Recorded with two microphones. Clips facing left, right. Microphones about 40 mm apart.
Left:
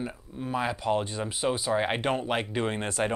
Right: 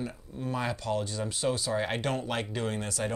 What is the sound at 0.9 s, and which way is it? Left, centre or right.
Speech, left.